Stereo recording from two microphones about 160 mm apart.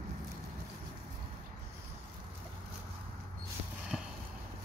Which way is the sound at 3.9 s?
5° right (ahead or behind).